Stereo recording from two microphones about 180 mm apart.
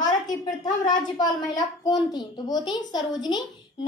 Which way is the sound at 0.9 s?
25° left (ahead or behind).